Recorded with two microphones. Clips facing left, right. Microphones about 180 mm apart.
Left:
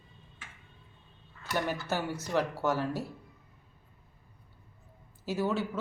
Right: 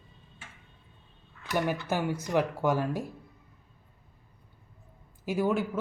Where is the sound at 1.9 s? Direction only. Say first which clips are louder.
Right 3 dB; 10° right (ahead or behind).